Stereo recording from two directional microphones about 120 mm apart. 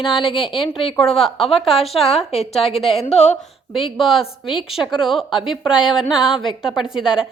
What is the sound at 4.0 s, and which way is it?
A woman's voice, centre (ahead or behind).